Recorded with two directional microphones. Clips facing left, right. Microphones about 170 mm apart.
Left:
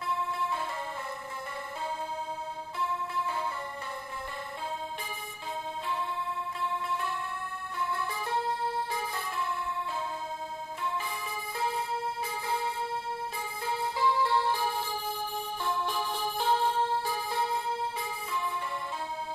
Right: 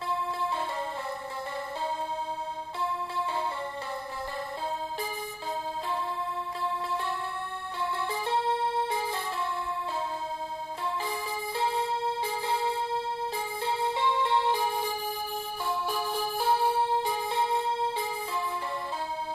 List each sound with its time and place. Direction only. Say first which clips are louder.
7.8 s music: right 2 dB; 25° right (ahead or behind)
11.1 s music: right 4 dB; 30° right (ahead or behind)